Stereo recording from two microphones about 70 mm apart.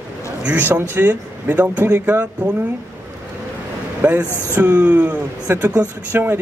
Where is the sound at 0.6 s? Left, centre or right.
Right.